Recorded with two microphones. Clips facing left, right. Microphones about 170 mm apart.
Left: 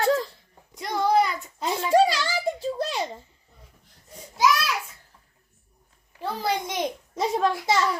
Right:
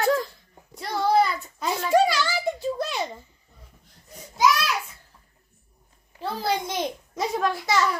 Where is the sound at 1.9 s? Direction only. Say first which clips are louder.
Left 1 dB; 30° left (ahead or behind).